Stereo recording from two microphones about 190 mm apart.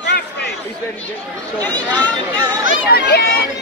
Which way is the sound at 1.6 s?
10° left (ahead or behind).